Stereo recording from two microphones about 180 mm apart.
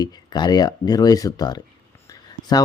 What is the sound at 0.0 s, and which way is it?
Speech, 25° left (ahead or behind).